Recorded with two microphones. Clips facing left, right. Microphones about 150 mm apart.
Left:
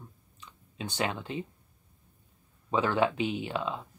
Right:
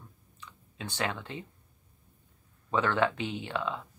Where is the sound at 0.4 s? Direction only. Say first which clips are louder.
Left 3 dB; 20° left (ahead or behind).